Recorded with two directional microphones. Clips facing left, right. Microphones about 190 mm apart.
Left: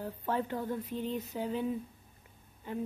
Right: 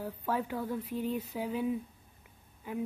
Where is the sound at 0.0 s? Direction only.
10° right (ahead or behind).